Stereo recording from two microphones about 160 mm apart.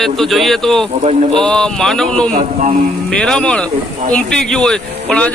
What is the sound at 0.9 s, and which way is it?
Speech, 40° right (ahead or behind).